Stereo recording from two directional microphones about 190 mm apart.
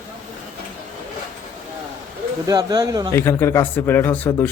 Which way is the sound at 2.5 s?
20° right (ahead or behind).